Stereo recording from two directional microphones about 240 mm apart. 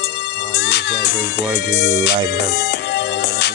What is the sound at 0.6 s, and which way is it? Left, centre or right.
Music, left.